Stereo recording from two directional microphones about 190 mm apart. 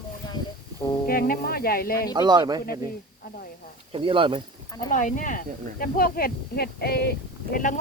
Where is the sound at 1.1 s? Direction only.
50° left (ahead or behind).